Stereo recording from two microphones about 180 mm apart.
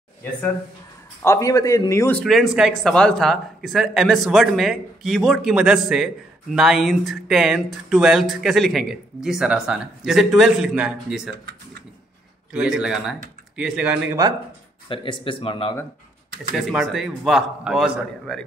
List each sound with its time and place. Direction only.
1.2 s speech: 15° left (ahead or behind); by 11.3 s 5° right (ahead or behind)
12.5 s speech: 5° right (ahead or behind)
14.9 s speech: 30° left (ahead or behind)
16.5 s speech: centre (ahead or behind)